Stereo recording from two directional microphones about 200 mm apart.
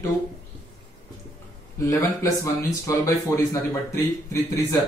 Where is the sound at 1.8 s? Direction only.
15° left (ahead or behind).